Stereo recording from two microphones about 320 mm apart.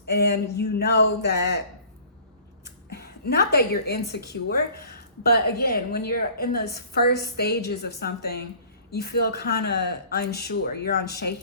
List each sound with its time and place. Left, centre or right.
0.1 s speech: left
2.9 s a woman's voice: left